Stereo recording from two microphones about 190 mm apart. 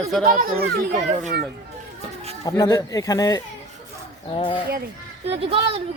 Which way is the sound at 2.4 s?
20° left (ahead or behind).